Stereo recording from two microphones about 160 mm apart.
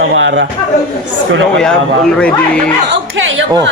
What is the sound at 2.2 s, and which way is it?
Speech, 5° left (ahead or behind).